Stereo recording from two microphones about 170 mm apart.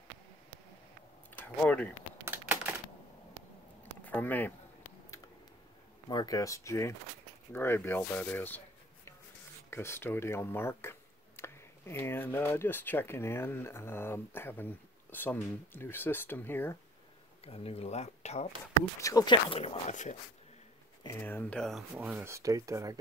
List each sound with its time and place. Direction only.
1.6 s speech: 10° left (ahead or behind)
2.2 s typewriter: 10° right (ahead or behind)
4.0 s speech: 10° left (ahead or behind)
6.0 s speech: 25° left (ahead or behind)
17.5 s speech: 35° left (ahead or behind)
18.9 s speech: 20° left (ahead or behind); by 20.2 s 45° left (ahead or behind)
21.2 s speech: 10° left (ahead or behind)
21.9 s speech: 10° right (ahead or behind)